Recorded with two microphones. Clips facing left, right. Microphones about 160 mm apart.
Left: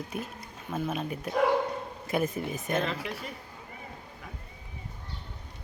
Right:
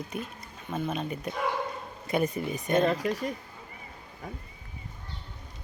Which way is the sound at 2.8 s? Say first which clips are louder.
Right 7 dB; 45° right (ahead or behind).